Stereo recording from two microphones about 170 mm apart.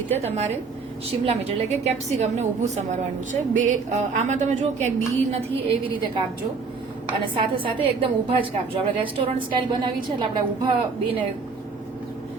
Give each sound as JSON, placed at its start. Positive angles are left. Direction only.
{"t": 0.2, "sound": "a woman's voice", "side_deg": -40}
{"t": 7.3, "sound": "a woman's voice", "side_deg": -30}